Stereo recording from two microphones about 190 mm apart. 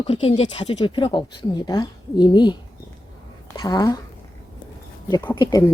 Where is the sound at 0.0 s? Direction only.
30° left (ahead or behind).